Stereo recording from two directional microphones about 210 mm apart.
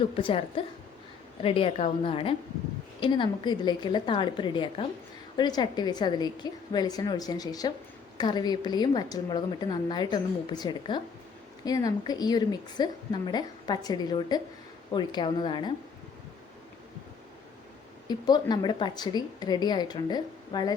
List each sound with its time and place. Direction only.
0.0 s a woman's voice: 25° left (ahead or behind)
18.1 s a woman's voice: 20° left (ahead or behind)